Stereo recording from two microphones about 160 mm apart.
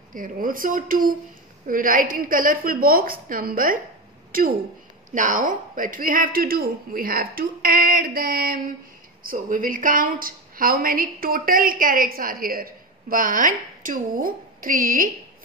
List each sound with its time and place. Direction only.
0.1 s a woman's voice: 60° right (ahead or behind)